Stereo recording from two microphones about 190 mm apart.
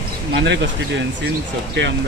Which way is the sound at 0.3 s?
65° right (ahead or behind).